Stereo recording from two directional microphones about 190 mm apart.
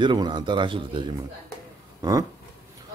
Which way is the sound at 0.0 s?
25° right (ahead or behind).